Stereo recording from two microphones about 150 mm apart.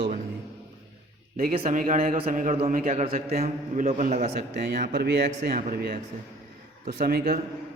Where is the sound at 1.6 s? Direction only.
60° right (ahead or behind).